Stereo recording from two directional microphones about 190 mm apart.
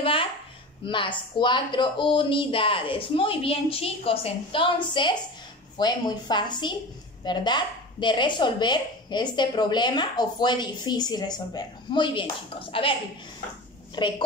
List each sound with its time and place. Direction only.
0.0 s a sound: 30° left (ahead or behind)
0.8 s a woman's voice: 25° left (ahead or behind)
13.9 s a woman's voice: 25° left (ahead or behind)